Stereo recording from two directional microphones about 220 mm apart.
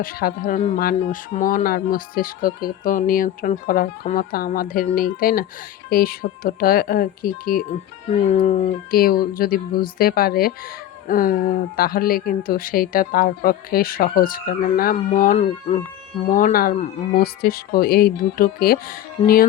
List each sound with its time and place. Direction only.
0.0 s a woman's voice: 40° left (ahead or behind)
8.1 s a woman's voice: 30° left (ahead or behind)